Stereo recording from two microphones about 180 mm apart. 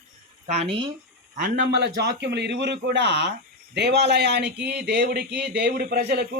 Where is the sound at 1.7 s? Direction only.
70° right (ahead or behind).